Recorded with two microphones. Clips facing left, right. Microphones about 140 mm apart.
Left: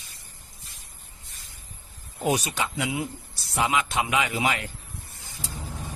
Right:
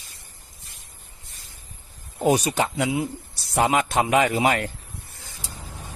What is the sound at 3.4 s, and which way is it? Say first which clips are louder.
Speech: right 4 dB; 45° right (ahead or behind).